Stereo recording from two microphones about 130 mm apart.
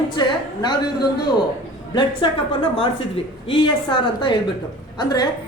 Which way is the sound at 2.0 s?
45° left (ahead or behind).